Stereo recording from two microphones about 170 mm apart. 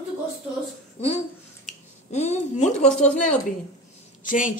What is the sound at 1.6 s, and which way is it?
Finger snapping, 40° left (ahead or behind).